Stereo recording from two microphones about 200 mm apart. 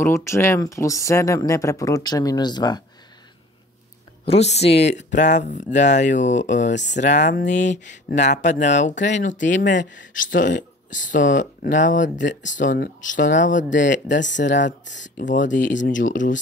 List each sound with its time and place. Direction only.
0.0 s speech: 15° left (ahead or behind)
4.3 s speech: 30° left (ahead or behind)
14.0 s speech: 60° left (ahead or behind)
14.3 s speech: 40° left (ahead or behind)